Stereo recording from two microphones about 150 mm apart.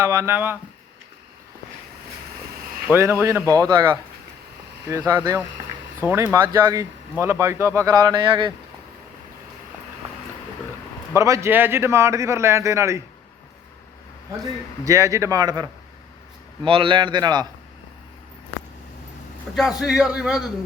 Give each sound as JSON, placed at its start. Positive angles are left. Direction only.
{"t": 0.1, "sound": "speech", "side_deg": -15}
{"t": 2.9, "sound": "speech", "side_deg": -15}
{"t": 4.9, "sound": "speech", "side_deg": -20}
{"t": 11.1, "sound": "speech", "side_deg": -20}
{"t": 14.8, "sound": "speech", "side_deg": -20}
{"t": 16.6, "sound": "a man's voice", "side_deg": -35}
{"t": 19.5, "sound": "a man's voice", "side_deg": 0}